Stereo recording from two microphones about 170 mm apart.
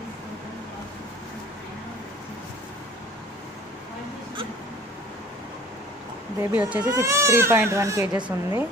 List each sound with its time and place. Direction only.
6.5 s speech: 10° right (ahead or behind)